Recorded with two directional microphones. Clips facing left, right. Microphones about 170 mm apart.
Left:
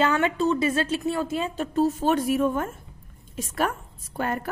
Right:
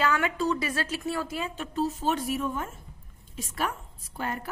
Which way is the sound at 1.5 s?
45° left (ahead or behind).